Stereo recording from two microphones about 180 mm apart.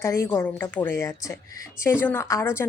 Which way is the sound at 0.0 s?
15° left (ahead or behind).